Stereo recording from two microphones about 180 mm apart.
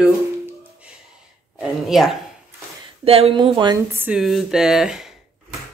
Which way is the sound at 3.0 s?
35° right (ahead or behind).